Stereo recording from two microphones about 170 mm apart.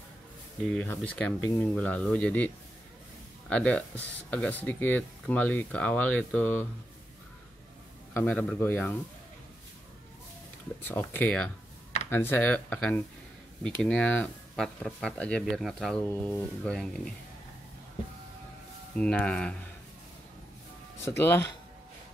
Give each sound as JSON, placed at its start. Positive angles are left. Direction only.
{"t": 0.7, "sound": "speech", "side_deg": 5}
{"t": 8.1, "sound": "speech", "side_deg": 10}
{"t": 10.8, "sound": "speech", "side_deg": 10}
{"t": 18.9, "sound": "speech", "side_deg": 5}
{"t": 21.2, "sound": "speech", "side_deg": 15}